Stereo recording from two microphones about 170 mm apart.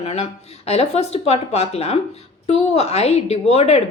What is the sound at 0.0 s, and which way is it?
A woman's voice, 40° left (ahead or behind).